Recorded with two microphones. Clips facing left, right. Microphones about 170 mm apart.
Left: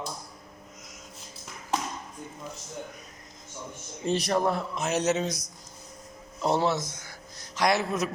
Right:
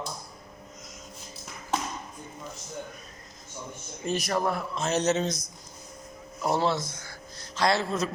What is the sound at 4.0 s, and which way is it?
Speech, 30° left (ahead or behind).